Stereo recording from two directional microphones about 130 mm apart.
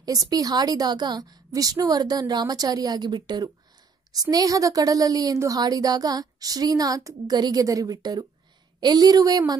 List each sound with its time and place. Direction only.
0.0 s a woman's voice: 30° right (ahead or behind)